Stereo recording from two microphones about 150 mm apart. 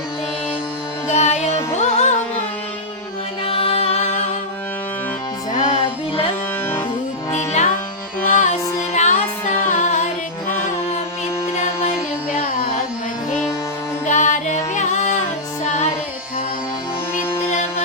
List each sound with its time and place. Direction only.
1.1 s music: 50° left (ahead or behind)
3.4 s music: 40° left (ahead or behind)
5.5 s music: 40° left (ahead or behind)
14.1 s music: 55° left (ahead or behind)